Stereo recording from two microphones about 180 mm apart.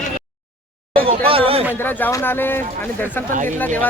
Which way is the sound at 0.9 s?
30° right (ahead or behind).